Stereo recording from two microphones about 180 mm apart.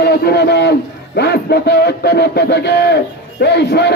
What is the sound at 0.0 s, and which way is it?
A man's voice, 65° left (ahead or behind).